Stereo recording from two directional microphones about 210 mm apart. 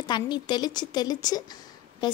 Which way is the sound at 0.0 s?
20° left (ahead or behind).